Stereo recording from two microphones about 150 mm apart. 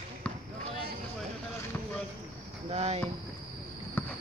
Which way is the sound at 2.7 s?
45° right (ahead or behind).